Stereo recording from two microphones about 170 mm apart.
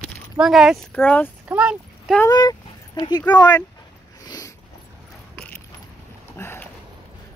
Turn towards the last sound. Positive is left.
turn(degrees=15)  # may be behind; listen again after turning